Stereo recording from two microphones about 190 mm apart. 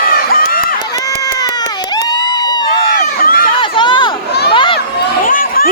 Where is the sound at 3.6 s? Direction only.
25° left (ahead or behind).